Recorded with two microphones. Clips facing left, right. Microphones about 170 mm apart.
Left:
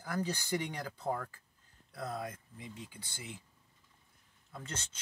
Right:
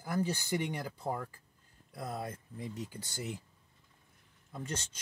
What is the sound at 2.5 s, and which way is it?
Speech, 45° right (ahead or behind).